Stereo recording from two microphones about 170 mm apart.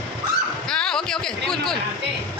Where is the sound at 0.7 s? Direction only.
5° left (ahead or behind).